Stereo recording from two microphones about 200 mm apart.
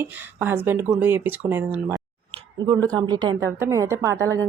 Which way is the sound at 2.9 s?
20° right (ahead or behind).